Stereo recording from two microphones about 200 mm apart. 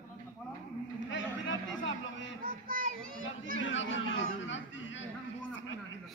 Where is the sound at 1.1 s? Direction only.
70° left (ahead or behind).